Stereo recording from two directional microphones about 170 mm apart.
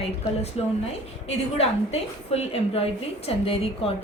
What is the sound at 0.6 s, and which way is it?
A woman's voice, 35° left (ahead or behind).